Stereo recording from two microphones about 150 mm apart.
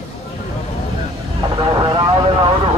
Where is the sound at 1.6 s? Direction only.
30° right (ahead or behind).